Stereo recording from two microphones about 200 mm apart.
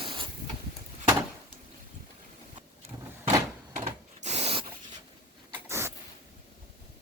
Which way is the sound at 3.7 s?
35° right (ahead or behind).